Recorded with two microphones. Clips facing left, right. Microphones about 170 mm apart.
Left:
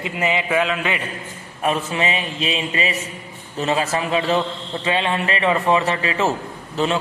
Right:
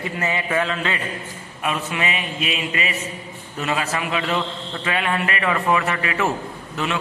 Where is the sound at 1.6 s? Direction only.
35° left (ahead or behind).